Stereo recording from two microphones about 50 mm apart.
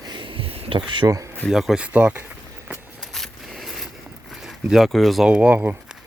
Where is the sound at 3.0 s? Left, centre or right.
Centre.